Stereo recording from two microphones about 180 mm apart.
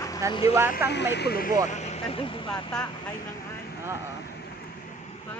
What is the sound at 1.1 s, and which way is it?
Speech, 60° left (ahead or behind).